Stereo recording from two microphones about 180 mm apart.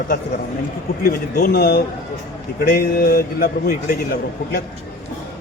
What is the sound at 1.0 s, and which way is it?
A man's voice, 55° left (ahead or behind).